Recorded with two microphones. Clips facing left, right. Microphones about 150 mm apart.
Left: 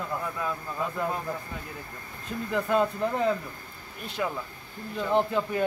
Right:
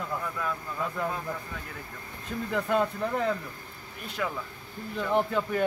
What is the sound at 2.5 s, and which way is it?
Speech, 15° left (ahead or behind).